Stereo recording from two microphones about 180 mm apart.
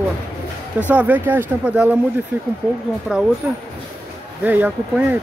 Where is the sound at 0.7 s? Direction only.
10° right (ahead or behind).